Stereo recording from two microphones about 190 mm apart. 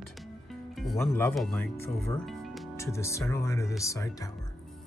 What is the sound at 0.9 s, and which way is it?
Speech, 10° left (ahead or behind).